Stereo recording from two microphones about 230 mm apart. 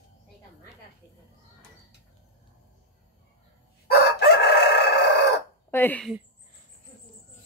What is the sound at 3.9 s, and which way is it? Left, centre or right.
Chicken, left.